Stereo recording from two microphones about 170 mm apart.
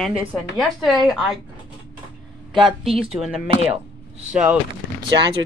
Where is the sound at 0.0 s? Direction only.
5° right (ahead or behind).